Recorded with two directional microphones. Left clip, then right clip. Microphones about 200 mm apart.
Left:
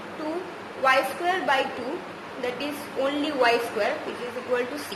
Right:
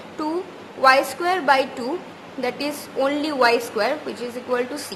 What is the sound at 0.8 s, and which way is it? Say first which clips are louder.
A woman's voice: right 6 dB; 30° right (ahead or behind).